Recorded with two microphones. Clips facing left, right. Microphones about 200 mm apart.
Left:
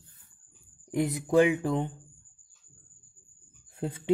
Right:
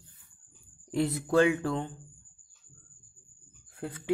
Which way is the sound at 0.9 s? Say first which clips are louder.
Left 1 dB; 15° left (ahead or behind).